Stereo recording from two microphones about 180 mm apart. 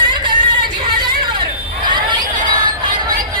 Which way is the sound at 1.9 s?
25° right (ahead or behind).